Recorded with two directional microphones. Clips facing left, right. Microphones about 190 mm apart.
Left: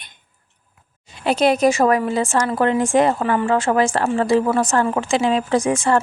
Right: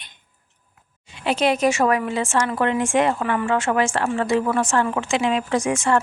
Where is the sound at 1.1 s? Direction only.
40° left (ahead or behind).